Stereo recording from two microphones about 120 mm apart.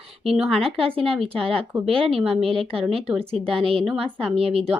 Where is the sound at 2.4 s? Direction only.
50° right (ahead or behind).